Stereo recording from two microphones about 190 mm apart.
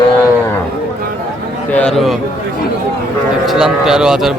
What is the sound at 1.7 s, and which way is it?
Speech, 5° left (ahead or behind).